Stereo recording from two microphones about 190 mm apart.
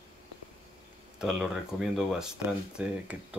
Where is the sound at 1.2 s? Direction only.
Centre (ahead or behind).